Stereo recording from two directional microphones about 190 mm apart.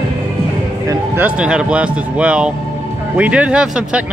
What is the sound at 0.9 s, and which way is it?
Speech, 10° right (ahead or behind).